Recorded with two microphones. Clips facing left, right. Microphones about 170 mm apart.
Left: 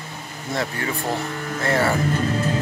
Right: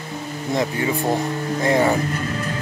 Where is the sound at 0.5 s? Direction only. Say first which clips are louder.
Right 4 dB; 20° right (ahead or behind).